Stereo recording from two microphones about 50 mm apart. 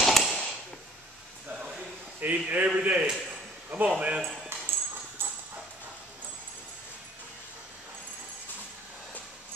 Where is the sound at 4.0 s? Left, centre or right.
Right.